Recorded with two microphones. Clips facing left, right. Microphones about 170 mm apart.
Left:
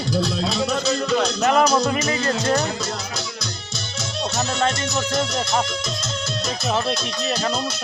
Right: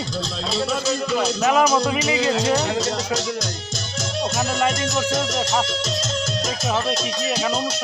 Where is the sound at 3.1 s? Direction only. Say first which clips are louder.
Right 6 dB; 45° right (ahead or behind).